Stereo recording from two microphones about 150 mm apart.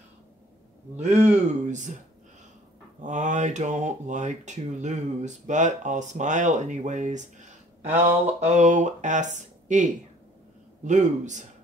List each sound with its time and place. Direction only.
0.9 s speech: 50° right (ahead or behind)
3.0 s speech: 55° right (ahead or behind)
7.8 s speech: 10° right (ahead or behind)
8.3 s speech: 50° right (ahead or behind)